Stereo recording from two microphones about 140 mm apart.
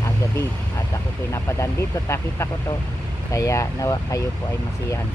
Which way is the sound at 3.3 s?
20° left (ahead or behind).